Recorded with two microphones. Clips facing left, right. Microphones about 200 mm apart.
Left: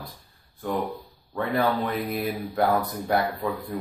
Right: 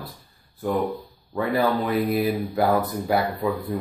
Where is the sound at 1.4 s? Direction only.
5° right (ahead or behind).